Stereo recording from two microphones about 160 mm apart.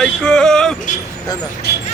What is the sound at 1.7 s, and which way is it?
Vehicle, 90° left.